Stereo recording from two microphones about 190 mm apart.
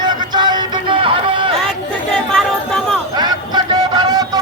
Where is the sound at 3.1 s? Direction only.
20° right (ahead or behind).